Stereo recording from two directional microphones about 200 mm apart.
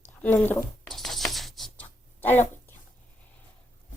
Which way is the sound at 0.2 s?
5° left (ahead or behind).